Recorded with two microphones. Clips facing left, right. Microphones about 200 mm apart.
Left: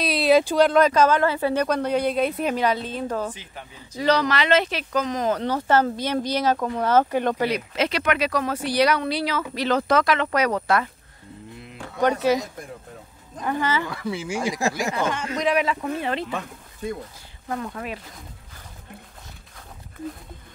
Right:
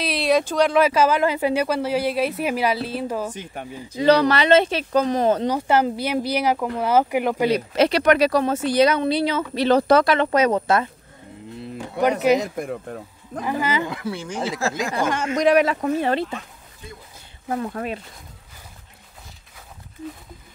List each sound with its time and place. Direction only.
0.0 s speech: centre (ahead or behind)
4.0 s speech: 30° right (ahead or behind)
5.4 s speech: 15° right (ahead or behind)
7.4 s speech: 35° right (ahead or behind)
12.0 s speech: 15° right (ahead or behind)
12.4 s speech: 65° right (ahead or behind)
13.4 s speech: 5° right (ahead or behind)
14.0 s speech: 5° left (ahead or behind)
15.1 s a man's voice: 45° right (ahead or behind)